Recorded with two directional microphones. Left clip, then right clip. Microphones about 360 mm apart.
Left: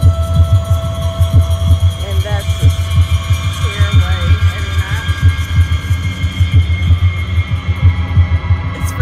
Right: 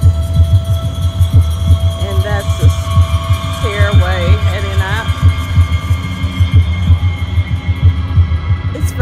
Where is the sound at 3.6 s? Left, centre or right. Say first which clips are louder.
Right 6 dB; centre.